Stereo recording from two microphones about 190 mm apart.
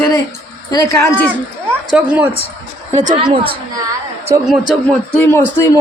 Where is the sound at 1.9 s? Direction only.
5° right (ahead or behind).